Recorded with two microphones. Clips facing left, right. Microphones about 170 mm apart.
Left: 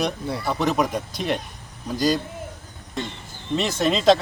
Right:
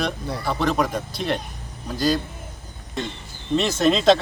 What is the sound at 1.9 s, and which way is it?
Speech, 15° left (ahead or behind).